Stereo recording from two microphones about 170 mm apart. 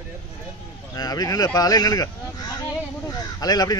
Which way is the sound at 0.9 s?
20° left (ahead or behind).